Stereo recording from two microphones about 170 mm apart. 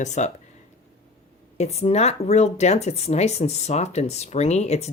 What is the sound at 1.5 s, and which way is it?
Speech, 40° left (ahead or behind).